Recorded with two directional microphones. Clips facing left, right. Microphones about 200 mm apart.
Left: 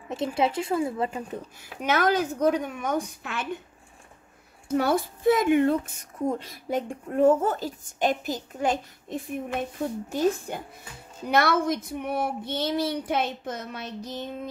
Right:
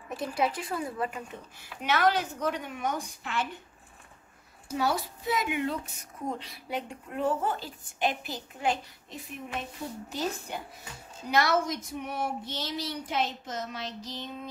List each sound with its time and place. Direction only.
0.1 s speech: 25° left (ahead or behind)
1.3 s speech: 45° left (ahead or behind)
4.6 s speech: 55° left (ahead or behind)